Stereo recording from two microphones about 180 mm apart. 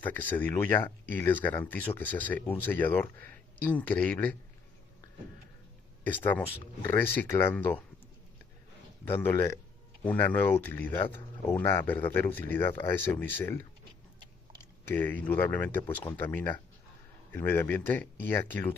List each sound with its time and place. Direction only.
0.0 s speech: 10° left (ahead or behind)
6.0 s speech: 10° left (ahead or behind)
9.0 s speech: 10° left (ahead or behind)
14.9 s speech: 10° left (ahead or behind)